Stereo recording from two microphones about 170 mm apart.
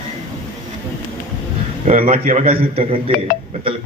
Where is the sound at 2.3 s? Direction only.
40° right (ahead or behind).